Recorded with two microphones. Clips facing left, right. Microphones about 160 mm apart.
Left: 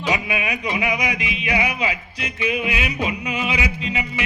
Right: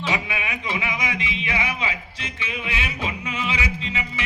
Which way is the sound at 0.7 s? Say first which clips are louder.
Left 4 dB; 25° right (ahead or behind).